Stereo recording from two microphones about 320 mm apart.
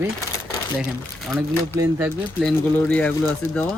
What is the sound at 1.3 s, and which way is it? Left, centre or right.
Speech, centre.